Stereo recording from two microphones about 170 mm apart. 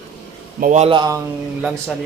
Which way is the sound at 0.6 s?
45° right (ahead or behind).